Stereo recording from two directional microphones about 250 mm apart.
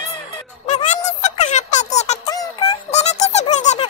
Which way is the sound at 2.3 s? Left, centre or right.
Centre.